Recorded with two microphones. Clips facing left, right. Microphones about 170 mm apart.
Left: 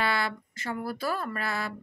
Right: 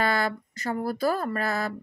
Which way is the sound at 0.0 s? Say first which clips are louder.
Right 4 dB; 45° right (ahead or behind).